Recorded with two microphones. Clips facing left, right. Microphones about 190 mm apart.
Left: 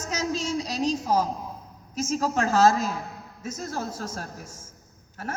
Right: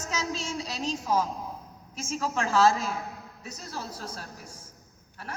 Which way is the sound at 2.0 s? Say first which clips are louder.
Left 5 dB; 40° left (ahead or behind).